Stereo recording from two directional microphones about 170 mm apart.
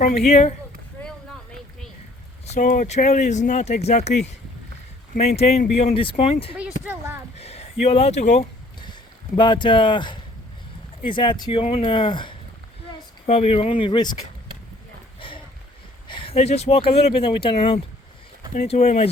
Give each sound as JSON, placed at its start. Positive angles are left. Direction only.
{"t": 0.0, "sound": "speech", "side_deg": 40}
{"t": 2.5, "sound": "speech", "side_deg": 50}
{"t": 5.4, "sound": "speech", "side_deg": 40}
{"t": 8.8, "sound": "speech", "side_deg": 25}
{"t": 15.2, "sound": "boat", "side_deg": 30}
{"t": 16.0, "sound": "speech", "side_deg": 30}